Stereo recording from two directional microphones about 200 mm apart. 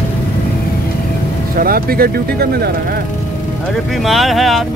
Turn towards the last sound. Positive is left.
turn(degrees=0)  # may be behind; listen again after turning